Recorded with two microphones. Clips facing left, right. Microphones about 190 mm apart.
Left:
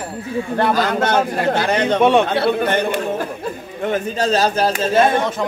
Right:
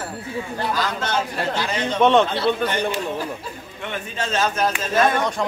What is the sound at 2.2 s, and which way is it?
A man's voice, 60° left (ahead or behind).